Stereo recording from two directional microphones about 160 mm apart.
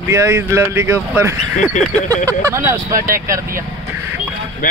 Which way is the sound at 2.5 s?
15° right (ahead or behind).